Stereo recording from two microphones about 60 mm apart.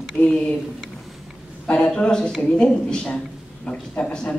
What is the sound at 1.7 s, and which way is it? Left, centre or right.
A man's voice, centre.